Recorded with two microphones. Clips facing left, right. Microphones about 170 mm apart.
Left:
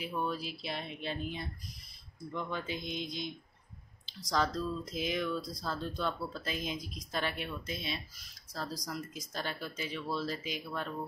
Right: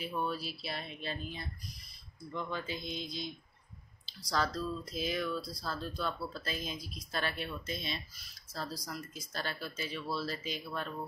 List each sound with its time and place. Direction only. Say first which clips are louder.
0.0 s speech: left 1 dB; 15° left (ahead or behind)